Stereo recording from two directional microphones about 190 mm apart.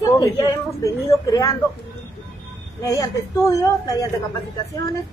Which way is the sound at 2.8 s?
15° left (ahead or behind).